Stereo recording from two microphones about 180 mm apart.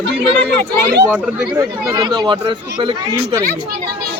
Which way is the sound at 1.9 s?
25° right (ahead or behind).